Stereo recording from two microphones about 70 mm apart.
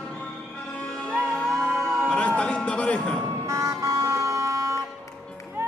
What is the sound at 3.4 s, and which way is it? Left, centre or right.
Vehicle, right.